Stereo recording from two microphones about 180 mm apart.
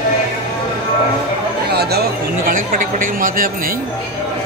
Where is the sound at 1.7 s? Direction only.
60° right (ahead or behind).